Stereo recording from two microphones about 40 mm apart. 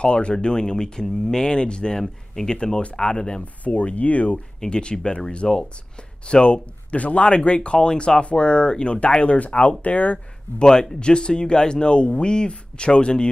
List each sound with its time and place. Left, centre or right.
0.0 s speech: left
3.6 s speech: left
4.6 s speech: left
10.1 s speech: centre